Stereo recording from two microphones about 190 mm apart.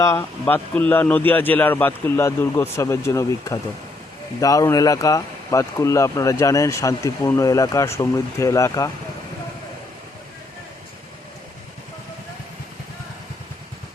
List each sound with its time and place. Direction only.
0.0 s speech: 15° left (ahead or behind)